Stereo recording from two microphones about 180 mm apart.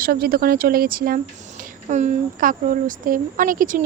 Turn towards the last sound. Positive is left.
turn(degrees=-50)  # may be behind; listen again after turning